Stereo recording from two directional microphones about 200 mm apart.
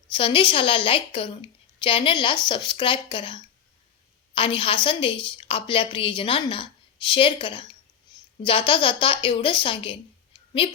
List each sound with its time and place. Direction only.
0.1 s a woman's voice: 25° left (ahead or behind)